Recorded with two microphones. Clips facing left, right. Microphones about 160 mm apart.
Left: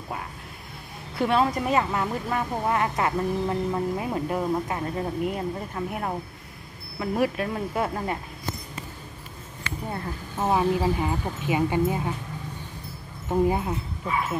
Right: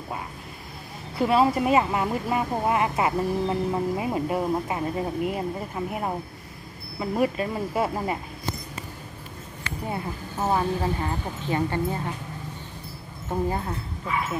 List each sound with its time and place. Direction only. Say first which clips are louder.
1.1 s speech: right 2 dB; 5° right (ahead or behind)
9.8 s speech: right 3 dB; 10° right (ahead or behind)
10.5 s speech: left 3 dB; 5° left (ahead or behind)
13.3 s speech: left 4 dB; 15° left (ahead or behind)